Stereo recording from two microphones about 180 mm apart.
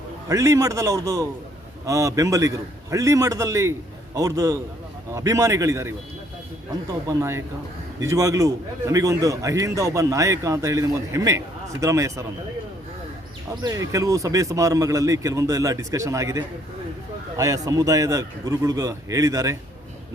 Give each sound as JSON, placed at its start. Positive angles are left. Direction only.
{"t": 0.3, "sound": "a man's voice", "side_deg": -20}
{"t": 7.1, "sound": "a man's voice", "side_deg": -15}
{"t": 13.6, "sound": "a man's voice", "side_deg": -20}